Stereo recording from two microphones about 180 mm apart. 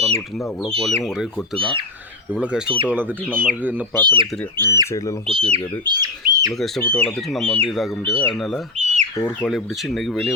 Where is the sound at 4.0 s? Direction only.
25° right (ahead or behind).